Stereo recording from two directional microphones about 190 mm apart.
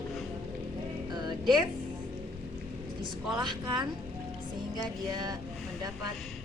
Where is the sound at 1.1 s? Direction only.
20° right (ahead or behind).